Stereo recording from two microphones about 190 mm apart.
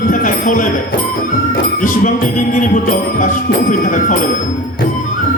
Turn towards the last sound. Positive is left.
turn(degrees=45)  # may be behind; listen again after turning